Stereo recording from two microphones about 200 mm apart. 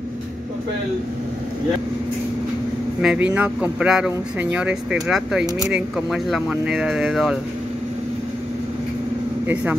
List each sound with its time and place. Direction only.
3.0 s speech: 5° right (ahead or behind)